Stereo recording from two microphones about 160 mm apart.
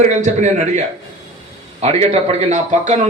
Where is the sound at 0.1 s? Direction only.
50° right (ahead or behind).